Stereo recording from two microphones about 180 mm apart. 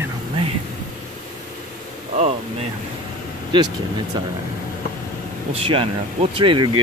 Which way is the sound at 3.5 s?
25° right (ahead or behind).